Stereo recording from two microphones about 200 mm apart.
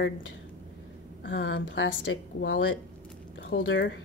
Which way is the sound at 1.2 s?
60° left (ahead or behind).